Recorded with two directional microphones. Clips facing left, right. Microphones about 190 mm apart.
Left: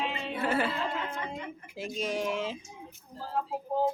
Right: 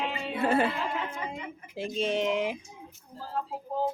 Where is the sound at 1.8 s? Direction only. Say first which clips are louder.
Right 4 dB; 25° right (ahead or behind).